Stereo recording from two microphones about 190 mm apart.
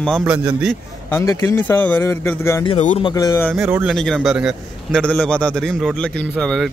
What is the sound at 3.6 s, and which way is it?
Speech, 10° right (ahead or behind).